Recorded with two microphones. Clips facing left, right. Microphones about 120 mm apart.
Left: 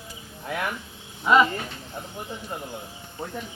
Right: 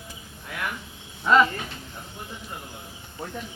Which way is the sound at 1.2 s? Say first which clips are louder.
Even; 10° left (ahead or behind).